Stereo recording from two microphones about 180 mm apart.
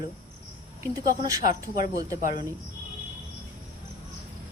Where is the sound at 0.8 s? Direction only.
20° right (ahead or behind).